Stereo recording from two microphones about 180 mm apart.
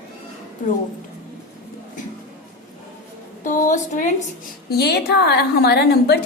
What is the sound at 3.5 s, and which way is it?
Speech, 45° left (ahead or behind).